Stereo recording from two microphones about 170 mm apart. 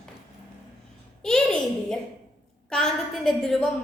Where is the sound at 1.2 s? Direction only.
5° left (ahead or behind).